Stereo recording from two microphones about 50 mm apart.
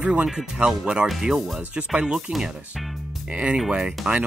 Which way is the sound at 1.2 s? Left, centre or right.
Centre.